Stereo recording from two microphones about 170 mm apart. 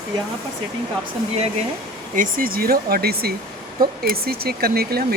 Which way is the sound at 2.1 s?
55° right (ahead or behind).